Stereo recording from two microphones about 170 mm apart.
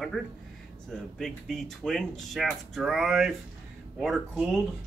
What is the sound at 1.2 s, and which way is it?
Speech, centre (ahead or behind).